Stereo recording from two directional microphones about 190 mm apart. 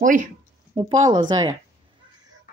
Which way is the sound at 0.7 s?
25° right (ahead or behind).